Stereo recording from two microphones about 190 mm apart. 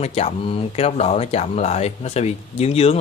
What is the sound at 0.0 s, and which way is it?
Speech, 35° left (ahead or behind).